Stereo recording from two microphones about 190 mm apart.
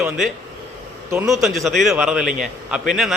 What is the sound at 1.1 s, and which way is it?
Speech, 15° right (ahead or behind).